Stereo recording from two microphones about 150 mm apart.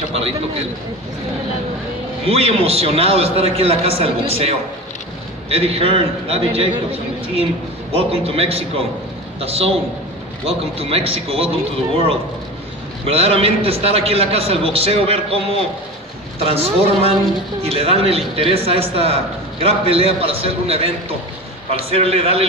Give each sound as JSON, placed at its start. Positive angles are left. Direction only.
{"t": 2.2, "sound": "a man's voice", "side_deg": -40}
{"t": 21.9, "sound": "a man's voice", "side_deg": -40}